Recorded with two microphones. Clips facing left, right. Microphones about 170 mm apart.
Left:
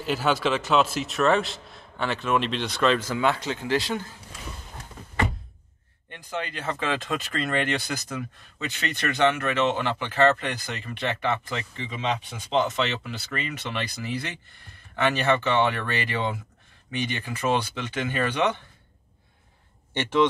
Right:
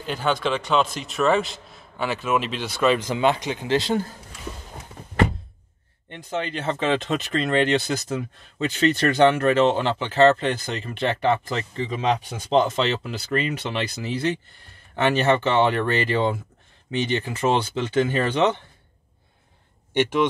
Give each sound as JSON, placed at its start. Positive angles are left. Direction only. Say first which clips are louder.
{"t": 0.0, "sound": "a man's voice", "louder": "even", "side_deg": 5}
{"t": 6.0, "sound": "speech", "louder": "right 4 dB", "side_deg": -25}
{"t": 19.9, "sound": "speech", "louder": "right 2 dB", "side_deg": -10}